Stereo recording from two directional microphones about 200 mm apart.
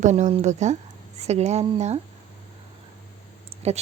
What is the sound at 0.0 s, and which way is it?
Speech, 35° right (ahead or behind).